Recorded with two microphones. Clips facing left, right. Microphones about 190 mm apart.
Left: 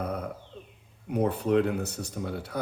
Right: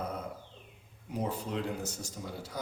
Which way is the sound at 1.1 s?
60° left (ahead or behind).